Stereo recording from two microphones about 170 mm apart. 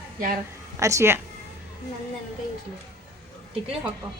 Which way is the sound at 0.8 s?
20° right (ahead or behind).